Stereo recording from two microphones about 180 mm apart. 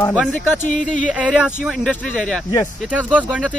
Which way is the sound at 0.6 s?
45° left (ahead or behind).